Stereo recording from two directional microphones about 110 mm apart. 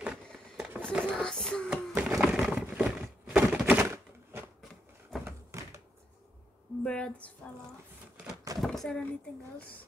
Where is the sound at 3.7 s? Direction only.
20° right (ahead or behind).